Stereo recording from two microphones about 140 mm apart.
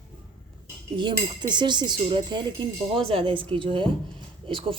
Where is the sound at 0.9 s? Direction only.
35° right (ahead or behind).